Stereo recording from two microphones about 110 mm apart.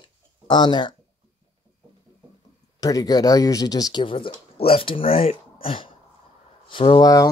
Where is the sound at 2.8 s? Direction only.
35° left (ahead or behind); by 7.0 s 50° left (ahead or behind).